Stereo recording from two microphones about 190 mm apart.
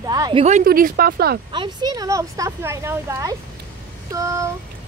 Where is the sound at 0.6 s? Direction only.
50° right (ahead or behind).